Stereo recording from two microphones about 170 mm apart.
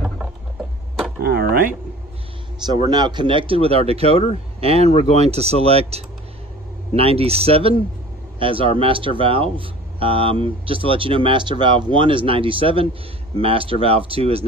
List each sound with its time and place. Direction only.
1.2 s power windows: 65° right (ahead or behind)
2.6 s speech: 25° right (ahead or behind)